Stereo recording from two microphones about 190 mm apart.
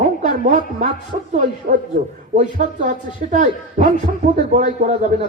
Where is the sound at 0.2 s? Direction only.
40° right (ahead or behind).